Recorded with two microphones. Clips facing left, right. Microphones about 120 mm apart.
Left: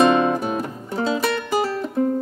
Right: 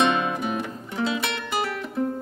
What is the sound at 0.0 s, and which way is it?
Music, 35° left (ahead or behind).